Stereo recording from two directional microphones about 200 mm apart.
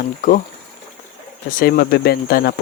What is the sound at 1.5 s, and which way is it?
Speech, 50° left (ahead or behind).